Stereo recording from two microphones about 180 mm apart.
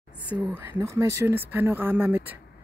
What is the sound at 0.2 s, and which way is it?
Speech, 10° right (ahead or behind).